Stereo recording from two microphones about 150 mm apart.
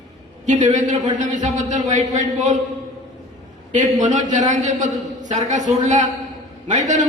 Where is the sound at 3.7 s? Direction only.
55° right (ahead or behind).